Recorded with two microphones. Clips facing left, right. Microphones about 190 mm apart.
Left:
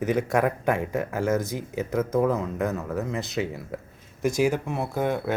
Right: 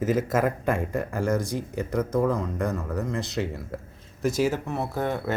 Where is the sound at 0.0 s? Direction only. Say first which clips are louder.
Even; centre (ahead or behind).